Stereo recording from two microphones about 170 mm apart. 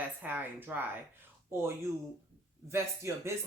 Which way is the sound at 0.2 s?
10° right (ahead or behind).